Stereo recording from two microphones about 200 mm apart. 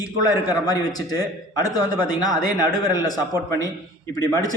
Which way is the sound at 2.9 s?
20° left (ahead or behind).